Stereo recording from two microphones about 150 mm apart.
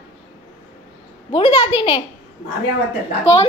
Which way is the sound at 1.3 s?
35° left (ahead or behind).